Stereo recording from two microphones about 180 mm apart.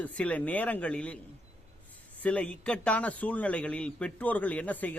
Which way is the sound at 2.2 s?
5° left (ahead or behind).